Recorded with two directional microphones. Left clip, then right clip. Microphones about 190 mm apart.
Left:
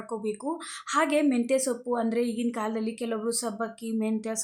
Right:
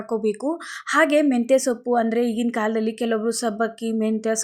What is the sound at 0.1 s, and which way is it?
Speech, 25° right (ahead or behind).